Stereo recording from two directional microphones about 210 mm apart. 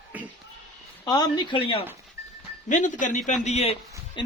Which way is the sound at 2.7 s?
35° left (ahead or behind).